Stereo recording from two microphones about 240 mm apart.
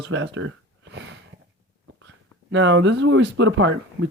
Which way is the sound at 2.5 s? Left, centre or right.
Right.